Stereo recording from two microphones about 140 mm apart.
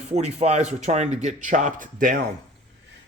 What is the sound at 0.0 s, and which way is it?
Speech, 50° right (ahead or behind).